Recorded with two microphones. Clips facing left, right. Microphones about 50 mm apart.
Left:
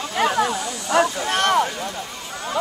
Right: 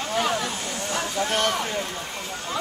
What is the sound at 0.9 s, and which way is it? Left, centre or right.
Speech, left.